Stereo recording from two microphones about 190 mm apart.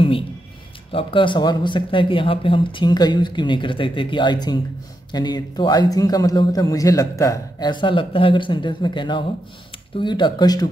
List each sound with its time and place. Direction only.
0.9 s a man's voice: 25° left (ahead or behind)